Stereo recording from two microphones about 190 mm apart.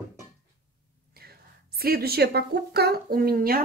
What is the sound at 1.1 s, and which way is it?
A woman's voice, 55° right (ahead or behind).